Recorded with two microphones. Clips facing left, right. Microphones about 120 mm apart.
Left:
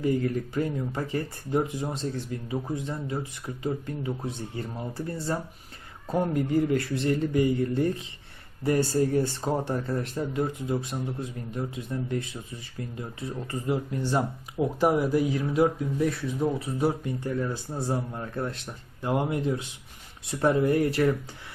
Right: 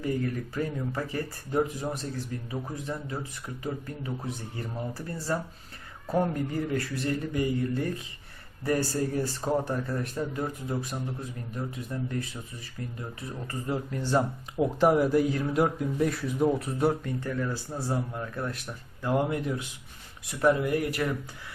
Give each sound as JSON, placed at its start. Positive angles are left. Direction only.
{"t": 0.0, "sound": "speech", "side_deg": 25}
{"t": 13.0, "sound": "speech", "side_deg": 25}
{"t": 14.5, "sound": "speech", "side_deg": 5}
{"t": 17.0, "sound": "speech", "side_deg": 20}